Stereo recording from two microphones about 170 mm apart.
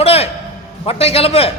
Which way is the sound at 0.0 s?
35° left (ahead or behind).